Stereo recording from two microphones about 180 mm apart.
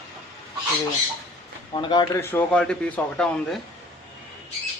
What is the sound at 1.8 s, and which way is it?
Speech, 25° left (ahead or behind).